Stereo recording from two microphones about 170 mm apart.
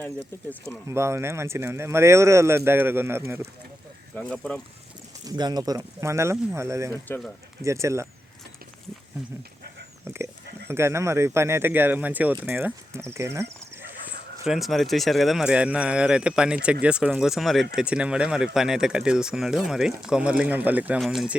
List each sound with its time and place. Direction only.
0.9 s speech: 15° right (ahead or behind)
4.1 s speech: 5° left (ahead or behind)
5.2 s speech: 25° right (ahead or behind)
10.0 s speech: 15° right (ahead or behind)
14.4 s speech: centre (ahead or behind)